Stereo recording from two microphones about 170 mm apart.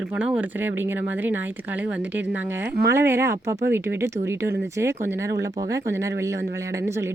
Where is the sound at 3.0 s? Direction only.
15° right (ahead or behind).